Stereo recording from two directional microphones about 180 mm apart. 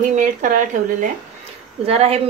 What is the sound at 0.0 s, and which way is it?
Speech, 45° right (ahead or behind).